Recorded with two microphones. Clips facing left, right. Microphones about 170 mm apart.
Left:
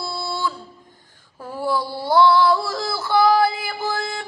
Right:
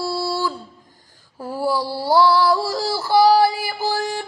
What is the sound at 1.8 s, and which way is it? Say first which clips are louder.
Yodeling: left 1 dB; 35° right (ahead or behind).